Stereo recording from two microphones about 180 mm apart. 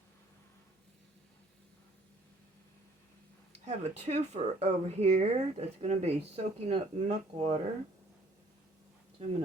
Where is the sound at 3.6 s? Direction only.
40° right (ahead or behind).